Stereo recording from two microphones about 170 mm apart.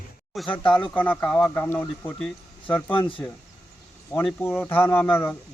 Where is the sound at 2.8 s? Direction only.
30° left (ahead or behind).